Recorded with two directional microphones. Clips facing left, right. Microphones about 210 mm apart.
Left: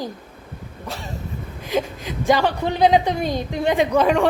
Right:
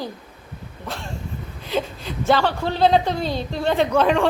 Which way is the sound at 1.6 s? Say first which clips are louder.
Left 2 dB; 10° left (ahead or behind).